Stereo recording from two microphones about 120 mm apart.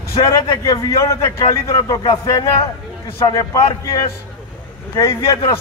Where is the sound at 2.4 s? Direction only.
50° left (ahead or behind).